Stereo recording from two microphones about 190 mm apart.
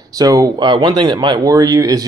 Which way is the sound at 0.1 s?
20° right (ahead or behind).